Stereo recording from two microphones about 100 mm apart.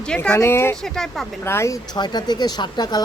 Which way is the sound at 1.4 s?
25° left (ahead or behind).